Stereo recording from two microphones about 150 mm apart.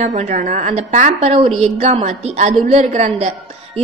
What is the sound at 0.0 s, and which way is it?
A woman's voice, 50° right (ahead or behind).